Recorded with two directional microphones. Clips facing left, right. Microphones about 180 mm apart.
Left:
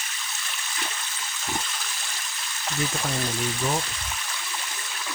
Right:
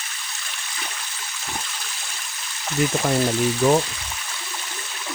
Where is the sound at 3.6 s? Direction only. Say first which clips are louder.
Right 11 dB; 80° right.